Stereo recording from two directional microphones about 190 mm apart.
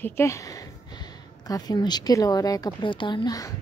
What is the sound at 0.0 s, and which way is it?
Speech, 15° left (ahead or behind).